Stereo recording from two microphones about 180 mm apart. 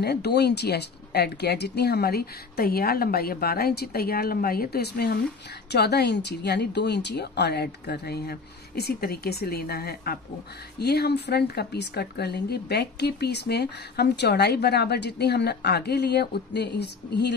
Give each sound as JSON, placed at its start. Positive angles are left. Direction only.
{"t": 0.0, "sound": "speech", "side_deg": 65}